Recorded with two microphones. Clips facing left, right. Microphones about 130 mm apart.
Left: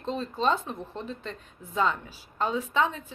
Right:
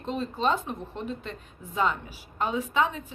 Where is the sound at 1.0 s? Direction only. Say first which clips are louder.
Right 2 dB; 40° left (ahead or behind).